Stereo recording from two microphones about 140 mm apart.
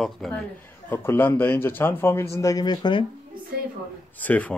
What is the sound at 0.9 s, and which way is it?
Speech, 15° left (ahead or behind).